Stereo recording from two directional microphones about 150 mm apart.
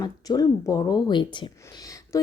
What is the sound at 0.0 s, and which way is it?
A woman's voice, 25° left (ahead or behind).